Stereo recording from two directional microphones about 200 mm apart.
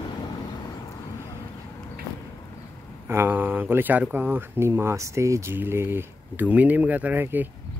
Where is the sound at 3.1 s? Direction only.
10° right (ahead or behind).